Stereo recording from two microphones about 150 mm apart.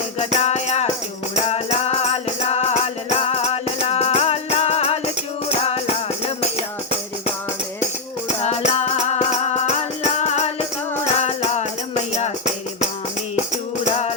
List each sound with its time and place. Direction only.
0.2 s music: 50° left (ahead or behind)
8.4 s music: 45° left (ahead or behind)
13.8 s music: 45° left (ahead or behind)